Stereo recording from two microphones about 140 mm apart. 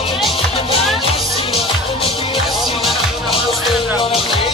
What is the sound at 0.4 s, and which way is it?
Music, 40° left (ahead or behind).